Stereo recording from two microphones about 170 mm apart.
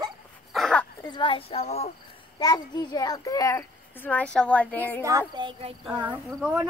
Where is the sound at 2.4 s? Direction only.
25° left (ahead or behind); by 4.8 s 5° left (ahead or behind).